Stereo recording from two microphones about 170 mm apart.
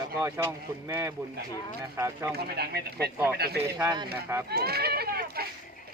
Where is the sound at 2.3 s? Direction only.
70° right (ahead or behind).